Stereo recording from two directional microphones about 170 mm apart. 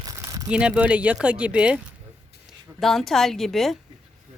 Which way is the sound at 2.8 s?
Centre (ahead or behind).